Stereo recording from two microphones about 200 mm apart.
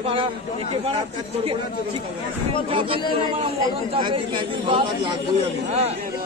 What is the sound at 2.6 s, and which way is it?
A man's voice, 25° right (ahead or behind).